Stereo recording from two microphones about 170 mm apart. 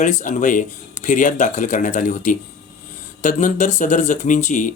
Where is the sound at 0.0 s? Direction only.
45° left (ahead or behind).